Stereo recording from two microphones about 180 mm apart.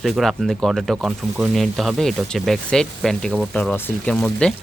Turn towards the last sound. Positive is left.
turn(degrees=5)  # may be behind; listen again after turning